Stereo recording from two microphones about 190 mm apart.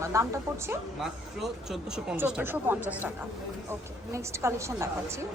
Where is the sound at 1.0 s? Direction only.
Centre (ahead or behind).